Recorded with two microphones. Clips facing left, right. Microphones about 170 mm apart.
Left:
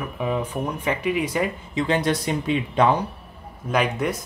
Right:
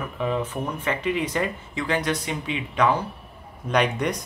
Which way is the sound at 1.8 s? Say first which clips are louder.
Left 4 dB; 25° left (ahead or behind).